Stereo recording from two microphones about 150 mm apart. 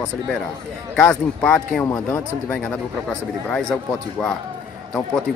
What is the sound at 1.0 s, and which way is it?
Speech, 5° left (ahead or behind).